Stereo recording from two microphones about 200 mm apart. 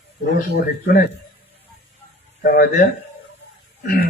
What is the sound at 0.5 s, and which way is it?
Speech, 50° left (ahead or behind).